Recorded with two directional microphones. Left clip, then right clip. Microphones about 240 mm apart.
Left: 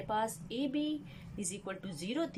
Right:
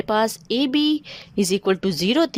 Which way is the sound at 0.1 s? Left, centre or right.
Right.